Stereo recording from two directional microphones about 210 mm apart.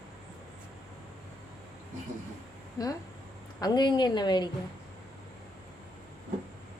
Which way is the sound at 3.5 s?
20° left (ahead or behind).